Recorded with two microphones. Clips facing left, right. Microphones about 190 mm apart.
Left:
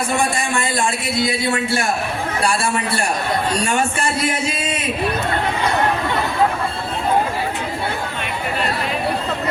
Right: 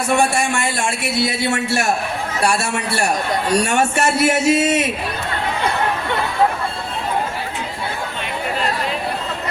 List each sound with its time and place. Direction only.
3.8 s speech: 70° right (ahead or behind)